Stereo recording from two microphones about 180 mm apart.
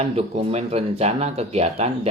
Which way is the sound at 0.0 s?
30° right (ahead or behind).